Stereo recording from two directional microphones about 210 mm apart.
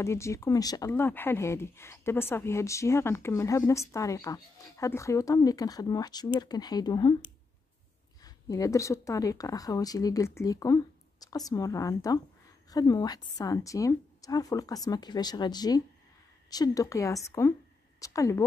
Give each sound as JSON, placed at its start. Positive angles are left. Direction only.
{"t": 0.0, "sound": "speech", "side_deg": 15}
{"t": 8.2, "sound": "speech", "side_deg": 15}